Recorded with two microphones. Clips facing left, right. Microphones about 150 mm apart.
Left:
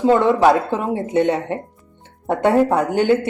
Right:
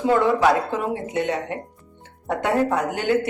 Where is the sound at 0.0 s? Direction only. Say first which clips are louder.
Left 4 dB; 25° left (ahead or behind).